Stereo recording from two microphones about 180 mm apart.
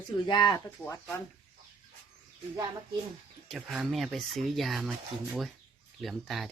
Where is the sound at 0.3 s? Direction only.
25° left (ahead or behind).